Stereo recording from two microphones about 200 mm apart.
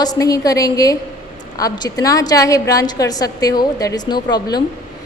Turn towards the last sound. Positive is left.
turn(degrees=20)  # may be behind; listen again after turning